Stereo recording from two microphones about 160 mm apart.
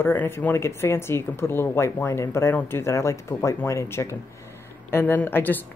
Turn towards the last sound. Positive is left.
turn(degrees=10)  # may be behind; listen again after turning